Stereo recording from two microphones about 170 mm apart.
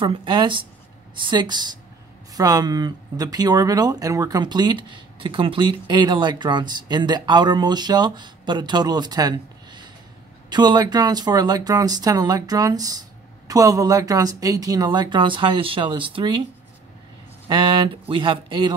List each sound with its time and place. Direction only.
0.0 s speech: 30° right (ahead or behind)
17.5 s speech: 30° right (ahead or behind)